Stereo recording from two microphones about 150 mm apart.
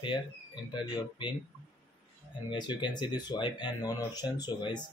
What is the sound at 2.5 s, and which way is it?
Speech, 30° left (ahead or behind).